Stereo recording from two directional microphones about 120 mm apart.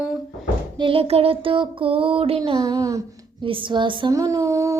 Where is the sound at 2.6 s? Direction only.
30° right (ahead or behind).